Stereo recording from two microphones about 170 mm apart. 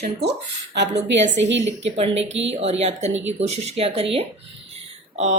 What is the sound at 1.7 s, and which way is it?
A woman's voice, 35° right (ahead or behind).